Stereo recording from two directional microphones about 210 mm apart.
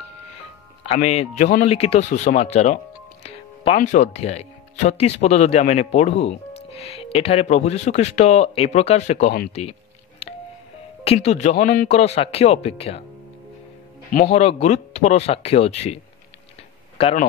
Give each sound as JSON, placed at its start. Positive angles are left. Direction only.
{"t": 0.9, "sound": "speech", "side_deg": 35}
{"t": 11.1, "sound": "speech", "side_deg": 30}
{"t": 14.3, "sound": "speech", "side_deg": 30}
{"t": 17.0, "sound": "speech", "side_deg": 35}